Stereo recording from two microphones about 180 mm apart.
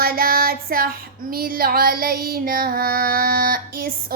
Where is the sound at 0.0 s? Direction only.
55° right (ahead or behind).